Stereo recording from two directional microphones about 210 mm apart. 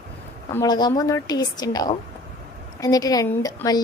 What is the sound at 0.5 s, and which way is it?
Speech, 20° left (ahead or behind).